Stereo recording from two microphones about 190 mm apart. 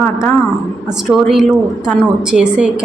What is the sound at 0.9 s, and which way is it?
A woman's voice, 5° right (ahead or behind).